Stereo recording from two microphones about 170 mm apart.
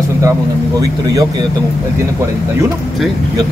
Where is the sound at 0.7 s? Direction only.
20° right (ahead or behind).